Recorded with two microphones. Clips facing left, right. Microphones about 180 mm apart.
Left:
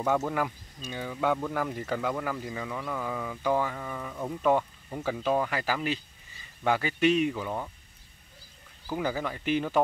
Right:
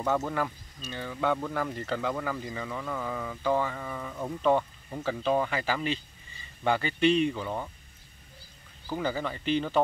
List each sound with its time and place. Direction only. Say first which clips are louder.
0.0 s speech: left 1 dB; 10° left (ahead or behind)
8.8 s speech: even; 10° left (ahead or behind)